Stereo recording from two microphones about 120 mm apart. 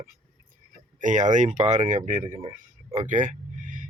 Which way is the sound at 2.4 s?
50° right (ahead or behind).